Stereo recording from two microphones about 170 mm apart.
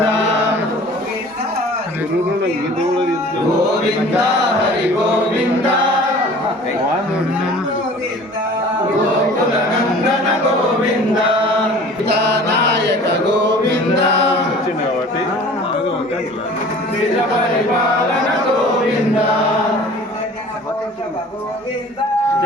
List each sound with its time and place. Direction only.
12.0 s music: 90° right